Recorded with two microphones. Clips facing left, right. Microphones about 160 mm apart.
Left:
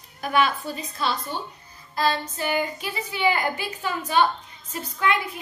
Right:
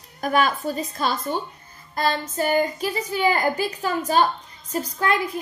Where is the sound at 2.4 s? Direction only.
45° right (ahead or behind).